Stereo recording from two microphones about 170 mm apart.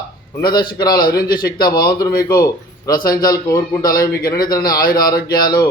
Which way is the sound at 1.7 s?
25° left (ahead or behind).